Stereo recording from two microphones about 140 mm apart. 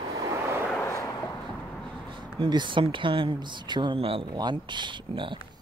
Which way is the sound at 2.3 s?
35° right (ahead or behind).